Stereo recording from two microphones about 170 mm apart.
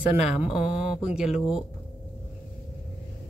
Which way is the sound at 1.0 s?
5° right (ahead or behind).